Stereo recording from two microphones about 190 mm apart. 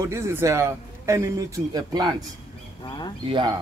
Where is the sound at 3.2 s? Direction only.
25° right (ahead or behind).